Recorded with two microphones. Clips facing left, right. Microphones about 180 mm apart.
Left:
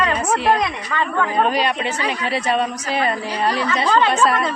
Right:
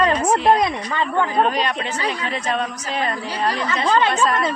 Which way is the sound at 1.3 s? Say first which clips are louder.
Left 1 dB; 5° left (ahead or behind).